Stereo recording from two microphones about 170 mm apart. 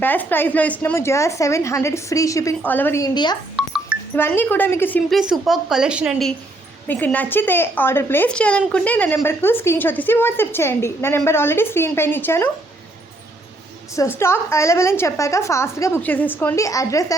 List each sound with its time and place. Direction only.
0.0 s a woman's voice: 10° left (ahead or behind)
3.6 s music: 5° right (ahead or behind)
4.1 s a woman's voice: 10° left (ahead or behind)
5.1 s a woman's voice: centre (ahead or behind)
6.8 s a woman's voice: 10° left (ahead or behind)
14.2 s a woman's voice: 15° left (ahead or behind)